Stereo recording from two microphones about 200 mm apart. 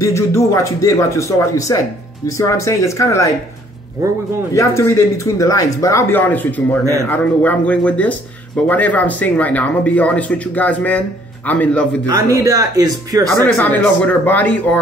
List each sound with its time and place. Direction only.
0.0 s speech: 15° left (ahead or behind)
4.6 s speech: 15° left (ahead or behind)
12.1 s speech: 15° right (ahead or behind)
13.5 s speech: 10° left (ahead or behind)